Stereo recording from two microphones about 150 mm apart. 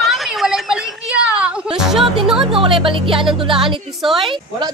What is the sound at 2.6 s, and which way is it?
Speech, 35° right (ahead or behind).